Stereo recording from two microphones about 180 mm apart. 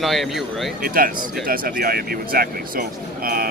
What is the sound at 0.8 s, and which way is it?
Speech, 50° right (ahead or behind).